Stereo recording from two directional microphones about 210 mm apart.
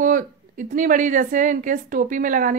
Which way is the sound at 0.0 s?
40° right (ahead or behind).